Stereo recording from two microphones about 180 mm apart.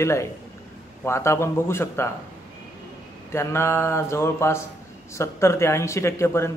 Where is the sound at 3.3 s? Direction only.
15° left (ahead or behind).